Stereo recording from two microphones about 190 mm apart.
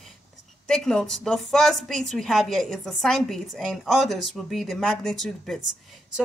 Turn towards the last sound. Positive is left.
turn(degrees=5)  # may be behind; listen again after turning